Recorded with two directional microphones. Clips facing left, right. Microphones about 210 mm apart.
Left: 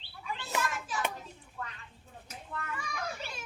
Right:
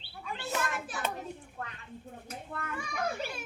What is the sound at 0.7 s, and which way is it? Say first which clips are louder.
Hands: left 1 dB; 55° right (ahead or behind).